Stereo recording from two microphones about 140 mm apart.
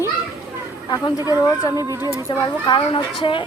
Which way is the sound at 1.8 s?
20° right (ahead or behind).